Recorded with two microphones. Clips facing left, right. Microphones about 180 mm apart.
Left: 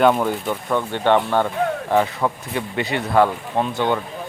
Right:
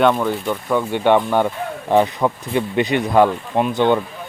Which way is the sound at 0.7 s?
10° right (ahead or behind).